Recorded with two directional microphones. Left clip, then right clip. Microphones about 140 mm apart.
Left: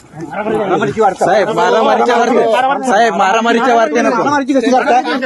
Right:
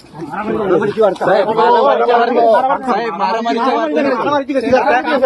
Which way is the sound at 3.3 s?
85° left.